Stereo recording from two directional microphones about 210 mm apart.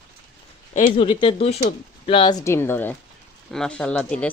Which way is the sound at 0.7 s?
30° left (ahead or behind).